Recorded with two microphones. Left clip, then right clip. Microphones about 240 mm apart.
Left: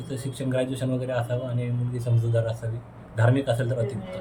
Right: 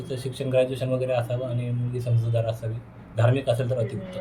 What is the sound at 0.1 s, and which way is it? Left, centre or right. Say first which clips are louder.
Speech: right 4 dB; centre.